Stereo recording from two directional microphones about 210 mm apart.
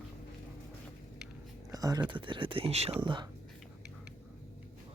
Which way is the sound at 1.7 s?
15° right (ahead or behind).